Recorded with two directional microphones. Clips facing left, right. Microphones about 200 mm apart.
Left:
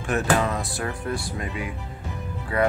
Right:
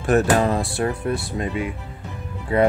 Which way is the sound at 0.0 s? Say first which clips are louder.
Right 5 dB; 35° right (ahead or behind).